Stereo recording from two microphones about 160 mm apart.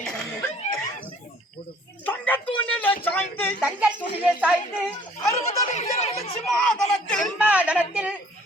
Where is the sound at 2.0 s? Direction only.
10° left (ahead or behind).